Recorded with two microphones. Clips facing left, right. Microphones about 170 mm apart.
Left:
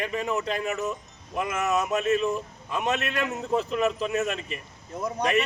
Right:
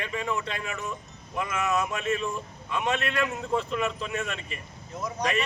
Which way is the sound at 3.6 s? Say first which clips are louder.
Left 4 dB; 35° left (ahead or behind).